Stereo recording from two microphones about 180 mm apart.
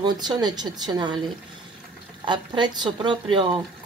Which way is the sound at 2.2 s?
25° right (ahead or behind).